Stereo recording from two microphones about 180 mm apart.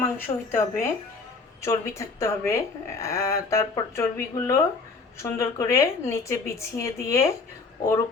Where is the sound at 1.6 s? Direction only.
15° left (ahead or behind).